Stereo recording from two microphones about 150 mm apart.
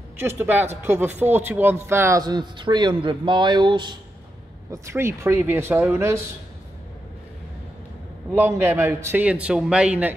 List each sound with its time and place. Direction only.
0.2 s a man's voice: 15° right (ahead or behind)
4.6 s a man's voice: 15° right (ahead or behind)
8.3 s a man's voice: 15° right (ahead or behind)